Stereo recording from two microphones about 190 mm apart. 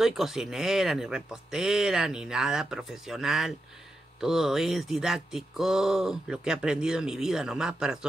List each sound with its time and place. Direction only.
0.0 s speech: centre (ahead or behind)